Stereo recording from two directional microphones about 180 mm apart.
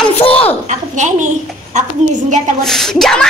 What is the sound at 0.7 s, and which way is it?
A woman's voice, 45° right (ahead or behind).